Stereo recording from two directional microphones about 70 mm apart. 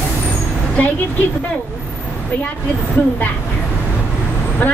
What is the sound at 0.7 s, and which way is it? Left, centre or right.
Speech, left.